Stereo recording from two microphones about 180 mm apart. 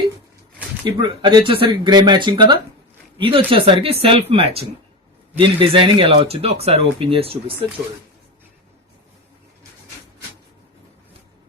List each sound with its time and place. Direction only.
0.9 s speech: 25° right (ahead or behind)